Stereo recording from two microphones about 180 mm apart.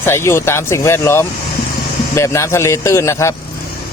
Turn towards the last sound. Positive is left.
turn(degrees=15)  # may be behind; listen again after turning